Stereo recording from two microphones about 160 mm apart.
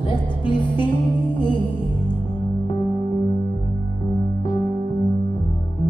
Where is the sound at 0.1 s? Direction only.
30° left (ahead or behind).